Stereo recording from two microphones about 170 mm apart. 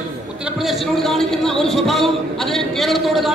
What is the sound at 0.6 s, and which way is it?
A man's voice, centre (ahead or behind).